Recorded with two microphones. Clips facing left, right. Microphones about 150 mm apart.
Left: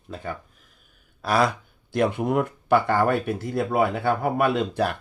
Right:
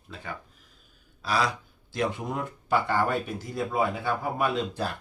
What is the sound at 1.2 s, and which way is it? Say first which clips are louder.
Speech: left 5 dB; 55° left (ahead or behind).